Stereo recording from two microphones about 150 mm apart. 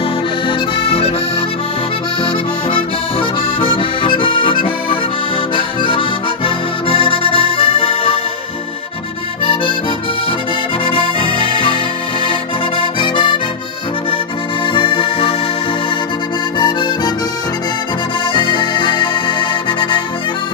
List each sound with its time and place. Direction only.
0.5 s accordion: 40° left (ahead or behind)
2.2 s accordion: 35° left (ahead or behind)
9.4 s accordion: 35° left (ahead or behind)
10.9 s accordion: 35° left (ahead or behind)
12.3 s music: 35° left (ahead or behind)
14.7 s accordion: 35° left (ahead or behind)
16.5 s music: 30° left (ahead or behind)
18.3 s music: 35° left (ahead or behind)